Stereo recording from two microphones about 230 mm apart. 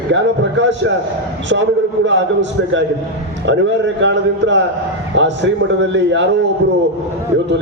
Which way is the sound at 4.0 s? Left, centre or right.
Right.